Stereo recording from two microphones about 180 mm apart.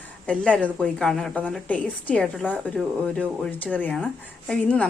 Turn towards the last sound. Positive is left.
turn(degrees=5)  # may be behind; listen again after turning